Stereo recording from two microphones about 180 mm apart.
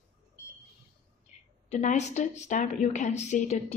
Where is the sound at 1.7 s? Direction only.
40° left (ahead or behind).